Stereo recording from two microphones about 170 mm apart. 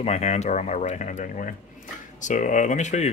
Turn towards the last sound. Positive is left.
turn(degrees=45)  # may be behind; listen again after turning